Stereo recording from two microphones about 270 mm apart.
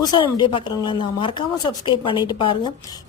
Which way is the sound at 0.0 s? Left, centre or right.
Centre.